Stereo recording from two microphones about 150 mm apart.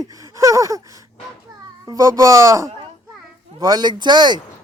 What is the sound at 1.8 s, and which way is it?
Speech, 20° right (ahead or behind).